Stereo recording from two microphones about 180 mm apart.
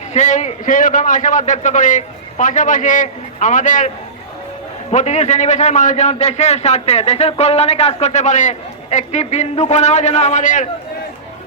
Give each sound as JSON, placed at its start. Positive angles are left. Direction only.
{"t": 0.1, "sound": "a man's voice", "side_deg": 40}